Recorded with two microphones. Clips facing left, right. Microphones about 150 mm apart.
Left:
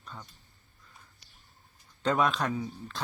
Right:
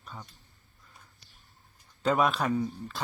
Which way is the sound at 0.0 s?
10° right (ahead or behind).